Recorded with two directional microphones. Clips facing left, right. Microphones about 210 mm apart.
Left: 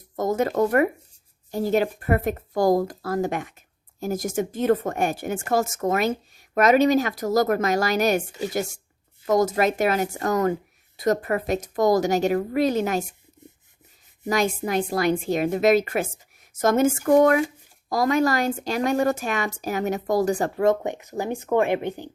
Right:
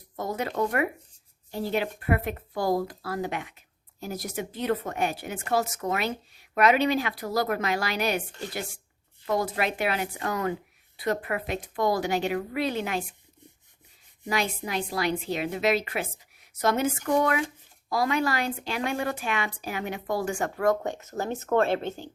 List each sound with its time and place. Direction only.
0.2 s speech: 45° left (ahead or behind)
14.3 s speech: 45° left (ahead or behind)
20.6 s speech: 20° left (ahead or behind)